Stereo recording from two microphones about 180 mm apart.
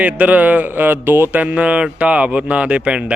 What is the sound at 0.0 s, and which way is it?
A man's voice, 10° right (ahead or behind).